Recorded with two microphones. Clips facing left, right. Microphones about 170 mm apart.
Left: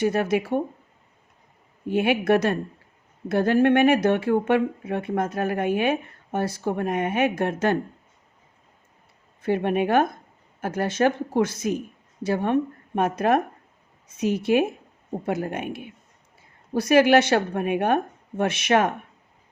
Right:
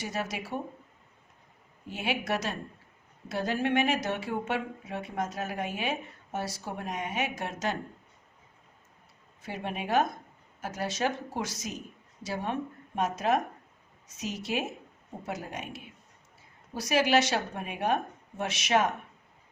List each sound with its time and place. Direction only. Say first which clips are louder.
0.0 s speech: left 13 dB; 55° left (ahead or behind)
1.9 s speech: left 11 dB; 55° left (ahead or behind)
9.4 s speech: left 13 dB; 60° left (ahead or behind)